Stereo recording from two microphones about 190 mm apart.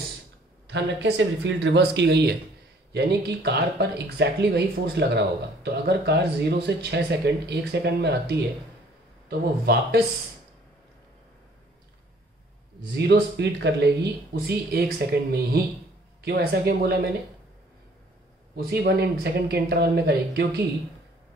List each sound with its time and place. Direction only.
0.7 s speech: 65° right (ahead or behind)
12.9 s speech: 60° right (ahead or behind)
18.6 s speech: 55° right (ahead or behind)